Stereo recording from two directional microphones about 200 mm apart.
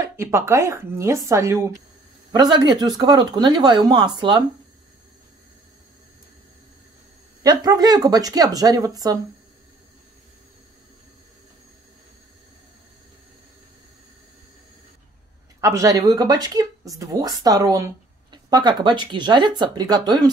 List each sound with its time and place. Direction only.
0.0 s speech: 15° right (ahead or behind)
7.4 s speech: 20° right (ahead or behind)
15.6 s speech: 15° right (ahead or behind)